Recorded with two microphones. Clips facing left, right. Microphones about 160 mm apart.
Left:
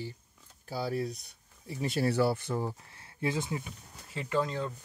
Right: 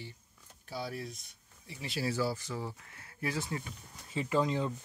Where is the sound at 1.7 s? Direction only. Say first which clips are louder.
Left 6 dB; 45° left (ahead or behind).